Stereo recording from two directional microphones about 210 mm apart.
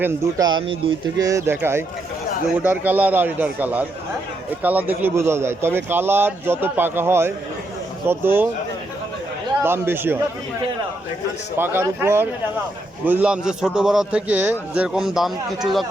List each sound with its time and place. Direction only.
0.0 s speech: 20° right (ahead or behind)
9.6 s speech: 10° right (ahead or behind)
11.5 s a man's voice: 10° right (ahead or behind)